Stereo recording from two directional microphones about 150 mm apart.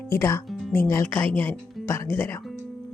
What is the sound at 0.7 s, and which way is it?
Speech, 20° left (ahead or behind).